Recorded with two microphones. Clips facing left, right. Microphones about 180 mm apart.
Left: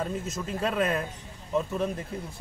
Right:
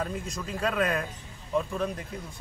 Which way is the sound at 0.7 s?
25° left (ahead or behind).